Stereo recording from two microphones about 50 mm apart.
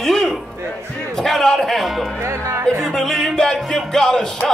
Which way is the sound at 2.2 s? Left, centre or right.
Right.